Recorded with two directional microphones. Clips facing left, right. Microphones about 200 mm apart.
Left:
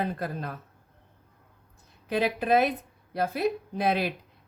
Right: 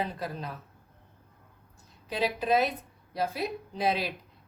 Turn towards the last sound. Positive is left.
turn(degrees=55)  # may be behind; listen again after turning